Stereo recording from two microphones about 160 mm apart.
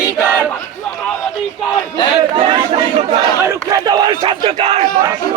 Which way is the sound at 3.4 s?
20° right (ahead or behind).